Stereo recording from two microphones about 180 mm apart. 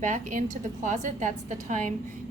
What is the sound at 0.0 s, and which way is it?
A woman's voice, 45° right (ahead or behind).